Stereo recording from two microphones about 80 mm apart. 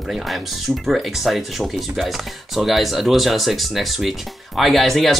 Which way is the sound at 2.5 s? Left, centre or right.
Centre.